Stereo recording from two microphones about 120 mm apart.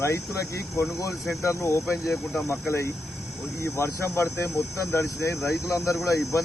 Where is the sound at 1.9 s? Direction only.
Centre (ahead or behind).